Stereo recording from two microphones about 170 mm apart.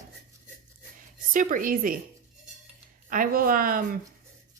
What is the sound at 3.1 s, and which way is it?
Speech, 55° right (ahead or behind).